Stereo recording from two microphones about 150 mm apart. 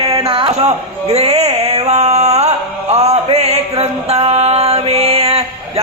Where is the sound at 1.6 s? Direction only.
45° right (ahead or behind).